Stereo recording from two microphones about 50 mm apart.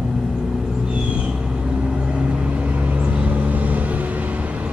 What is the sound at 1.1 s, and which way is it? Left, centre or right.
Vehicle, centre.